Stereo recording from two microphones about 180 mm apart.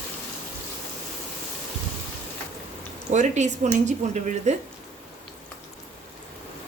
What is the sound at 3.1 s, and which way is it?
A woman's voice, 40° right (ahead or behind).